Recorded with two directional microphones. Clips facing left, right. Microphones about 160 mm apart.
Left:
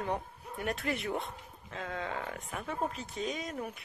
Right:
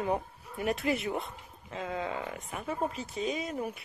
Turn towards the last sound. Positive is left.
turn(degrees=-5)  # may be behind; listen again after turning